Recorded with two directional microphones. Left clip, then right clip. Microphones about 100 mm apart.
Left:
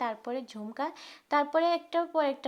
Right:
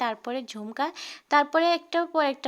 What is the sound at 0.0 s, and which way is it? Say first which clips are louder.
A woman's voice: right 4 dB; 25° right (ahead or behind).